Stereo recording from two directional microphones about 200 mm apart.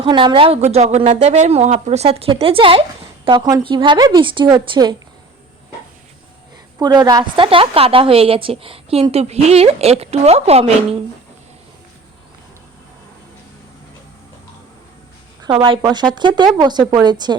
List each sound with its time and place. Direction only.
0.0 s a woman's voice: 25° right (ahead or behind)
6.7 s a woman's voice: 20° right (ahead or behind)
15.4 s a woman's voice: 25° right (ahead or behind)